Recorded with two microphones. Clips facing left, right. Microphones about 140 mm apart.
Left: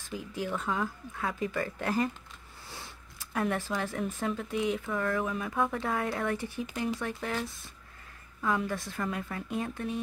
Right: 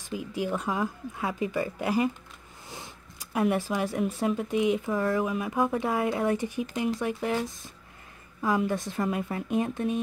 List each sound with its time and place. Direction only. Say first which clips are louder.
0.1 s speech: right 4 dB; 15° right (ahead or behind)
4.9 s speech: right 4 dB; 30° right (ahead or behind)
5.2 s speech: right 4 dB; 15° right (ahead or behind)